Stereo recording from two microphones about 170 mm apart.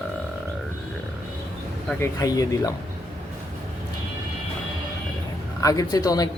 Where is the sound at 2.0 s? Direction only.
20° left (ahead or behind).